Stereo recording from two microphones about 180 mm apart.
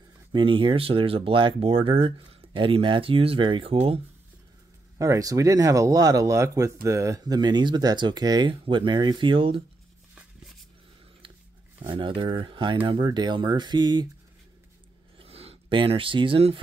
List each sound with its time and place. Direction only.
0.3 s speech: 25° right (ahead or behind)
4.9 s speech: 15° right (ahead or behind)
11.8 s speech: 25° right (ahead or behind)
15.1 s a sound: 35° right (ahead or behind)